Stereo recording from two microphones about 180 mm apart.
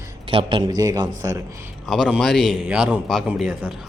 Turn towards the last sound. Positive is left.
turn(degrees=-5)  # may be behind; listen again after turning